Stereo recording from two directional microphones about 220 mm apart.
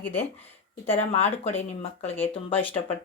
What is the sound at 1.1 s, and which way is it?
A woman's voice, 30° left (ahead or behind).